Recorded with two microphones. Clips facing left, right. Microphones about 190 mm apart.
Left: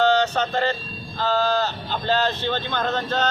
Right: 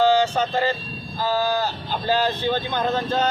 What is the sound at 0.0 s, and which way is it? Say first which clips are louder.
Speech: right 1 dB; 10° right (ahead or behind).